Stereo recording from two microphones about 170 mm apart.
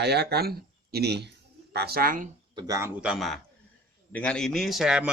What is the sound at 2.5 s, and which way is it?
Speech, 20° right (ahead or behind).